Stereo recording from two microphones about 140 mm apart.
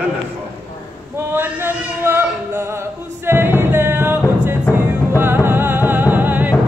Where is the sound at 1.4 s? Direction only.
15° right (ahead or behind).